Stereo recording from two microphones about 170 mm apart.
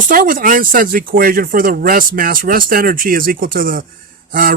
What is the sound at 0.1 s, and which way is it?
Speech, 55° right (ahead or behind).